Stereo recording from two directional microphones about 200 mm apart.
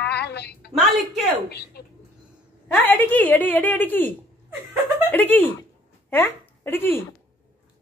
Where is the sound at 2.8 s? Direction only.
10° left (ahead or behind).